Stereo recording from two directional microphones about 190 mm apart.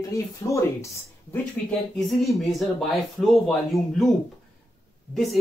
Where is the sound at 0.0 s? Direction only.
15° left (ahead or behind).